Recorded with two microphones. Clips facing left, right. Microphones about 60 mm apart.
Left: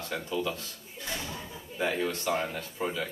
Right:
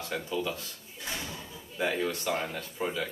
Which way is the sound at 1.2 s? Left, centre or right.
Left.